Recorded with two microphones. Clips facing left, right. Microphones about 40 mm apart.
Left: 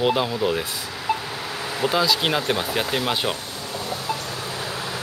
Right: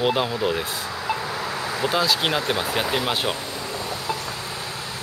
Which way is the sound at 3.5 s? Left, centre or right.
Right.